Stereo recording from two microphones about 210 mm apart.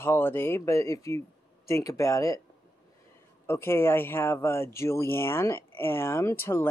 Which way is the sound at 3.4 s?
10° left (ahead or behind).